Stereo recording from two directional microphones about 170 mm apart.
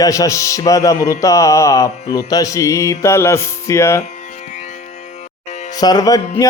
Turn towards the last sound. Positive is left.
turn(degrees=20)  # may be behind; listen again after turning